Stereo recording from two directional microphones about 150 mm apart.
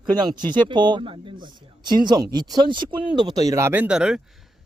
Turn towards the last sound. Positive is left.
turn(degrees=-5)  # may be behind; listen again after turning